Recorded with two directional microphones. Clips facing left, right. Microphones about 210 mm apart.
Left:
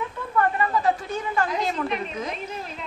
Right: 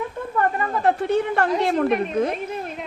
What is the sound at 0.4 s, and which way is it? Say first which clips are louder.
A woman's voice: even; 50° right (ahead or behind).